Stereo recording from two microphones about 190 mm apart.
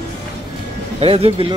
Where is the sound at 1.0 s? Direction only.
30° right (ahead or behind).